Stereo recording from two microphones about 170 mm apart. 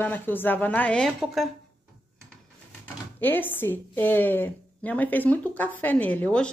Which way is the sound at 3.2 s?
10° left (ahead or behind).